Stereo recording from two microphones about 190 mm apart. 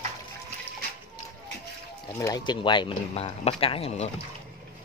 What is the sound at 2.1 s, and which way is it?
Speech, 20° left (ahead or behind).